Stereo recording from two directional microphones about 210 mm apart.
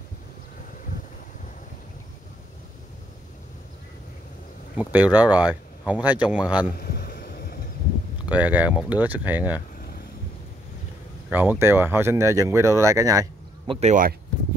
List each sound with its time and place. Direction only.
4.7 s speech: 5° right (ahead or behind)
6.8 s a sound: 45° left (ahead or behind)
8.3 s speech: 5° right (ahead or behind)
11.2 s speech: 10° right (ahead or behind)
13.7 s speech: 35° right (ahead or behind)